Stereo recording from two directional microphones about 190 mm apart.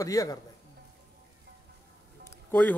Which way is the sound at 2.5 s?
10° left (ahead or behind).